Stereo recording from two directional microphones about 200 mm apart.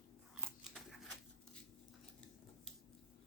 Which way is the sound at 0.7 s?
Centre (ahead or behind).